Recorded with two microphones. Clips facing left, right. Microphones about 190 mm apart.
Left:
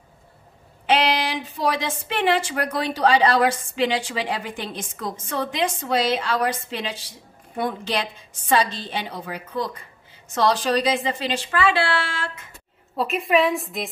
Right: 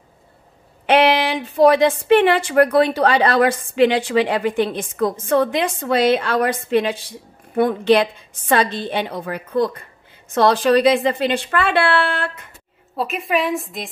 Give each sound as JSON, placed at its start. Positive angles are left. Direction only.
{"t": 0.8, "sound": "a woman's voice", "side_deg": -60}
{"t": 12.9, "sound": "a woman's voice", "side_deg": 0}